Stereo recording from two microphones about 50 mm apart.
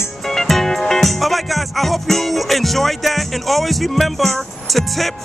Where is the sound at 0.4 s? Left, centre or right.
Centre.